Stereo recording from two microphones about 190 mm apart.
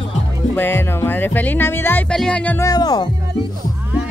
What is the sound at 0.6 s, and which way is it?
Speech, 10° left (ahead or behind).